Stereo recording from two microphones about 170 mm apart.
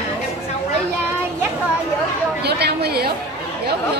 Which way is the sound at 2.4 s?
75° right (ahead or behind).